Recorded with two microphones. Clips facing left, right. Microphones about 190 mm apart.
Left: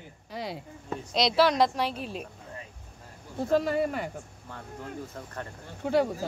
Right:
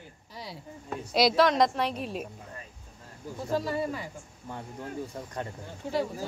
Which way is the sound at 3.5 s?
60° left (ahead or behind).